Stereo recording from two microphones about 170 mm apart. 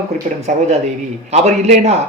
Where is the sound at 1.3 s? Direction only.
40° right (ahead or behind).